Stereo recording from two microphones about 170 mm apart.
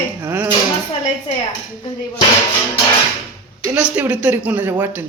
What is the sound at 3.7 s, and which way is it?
Speech, 10° right (ahead or behind).